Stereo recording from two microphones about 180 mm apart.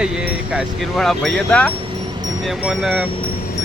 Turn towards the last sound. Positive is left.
turn(degrees=-5)  # may be behind; listen again after turning